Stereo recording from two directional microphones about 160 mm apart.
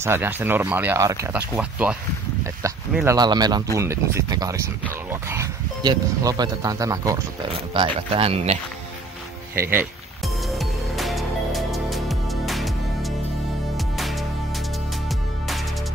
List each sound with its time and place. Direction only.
0.0 s speech: 15° right (ahead or behind)
1.3 s speech: 10° right (ahead or behind)
5.8 s speech: 25° right (ahead or behind)
9.6 s speech: 15° right (ahead or behind)
10.2 s music: centre (ahead or behind)